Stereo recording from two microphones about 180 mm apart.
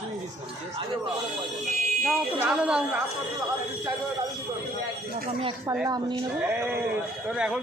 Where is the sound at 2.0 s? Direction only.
5° right (ahead or behind).